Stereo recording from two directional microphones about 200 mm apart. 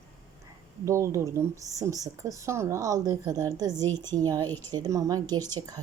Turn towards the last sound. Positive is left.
turn(degrees=-20)  # may be behind; listen again after turning